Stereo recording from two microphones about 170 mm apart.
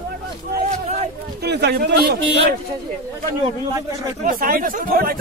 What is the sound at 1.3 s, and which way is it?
Speech, 75° right (ahead or behind).